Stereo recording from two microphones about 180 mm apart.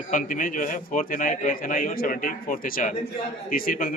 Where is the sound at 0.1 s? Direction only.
45° left (ahead or behind).